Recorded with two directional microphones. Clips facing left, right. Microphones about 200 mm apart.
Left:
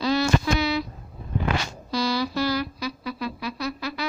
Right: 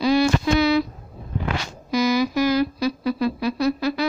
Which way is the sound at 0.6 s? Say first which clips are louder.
Right 7 dB; 60° right (ahead or behind).